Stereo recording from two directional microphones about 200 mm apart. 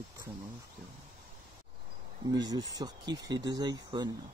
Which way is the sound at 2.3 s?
20° right (ahead or behind).